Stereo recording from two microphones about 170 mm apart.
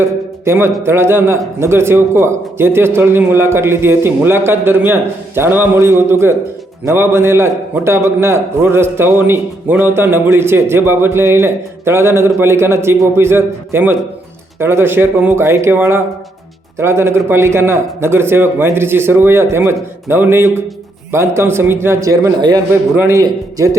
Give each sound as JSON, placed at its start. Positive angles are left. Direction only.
{"t": 0.4, "sound": "a man's voice", "side_deg": -15}